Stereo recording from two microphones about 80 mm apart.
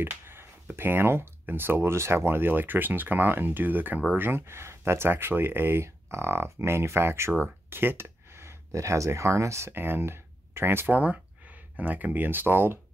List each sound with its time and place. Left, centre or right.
0.0 s speech: right